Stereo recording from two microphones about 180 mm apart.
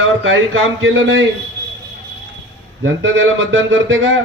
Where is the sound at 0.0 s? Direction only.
90° right.